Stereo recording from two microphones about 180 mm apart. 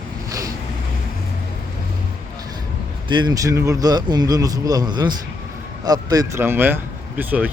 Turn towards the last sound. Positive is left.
turn(degrees=-10)  # may be behind; listen again after turning